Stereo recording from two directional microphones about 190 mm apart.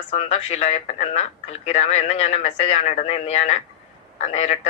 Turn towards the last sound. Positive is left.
turn(degrees=35)  # may be behind; listen again after turning